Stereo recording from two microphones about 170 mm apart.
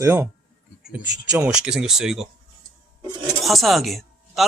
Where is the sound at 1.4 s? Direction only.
5° right (ahead or behind).